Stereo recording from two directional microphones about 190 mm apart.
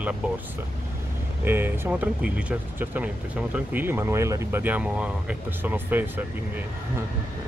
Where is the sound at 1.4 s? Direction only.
10° right (ahead or behind).